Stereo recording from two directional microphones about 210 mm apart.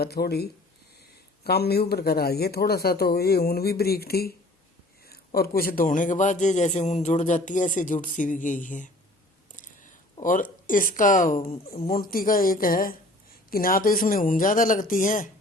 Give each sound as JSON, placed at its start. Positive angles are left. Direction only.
{"t": 0.0, "sound": "a man's voice", "side_deg": 50}
{"t": 10.2, "sound": "a man's voice", "side_deg": 40}
{"t": 11.9, "sound": "a man's voice", "side_deg": 45}